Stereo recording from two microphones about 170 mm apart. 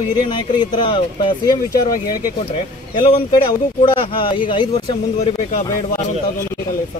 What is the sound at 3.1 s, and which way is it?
Speech, 25° left (ahead or behind).